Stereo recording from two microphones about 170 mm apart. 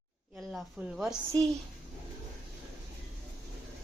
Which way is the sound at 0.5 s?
5° right (ahead or behind).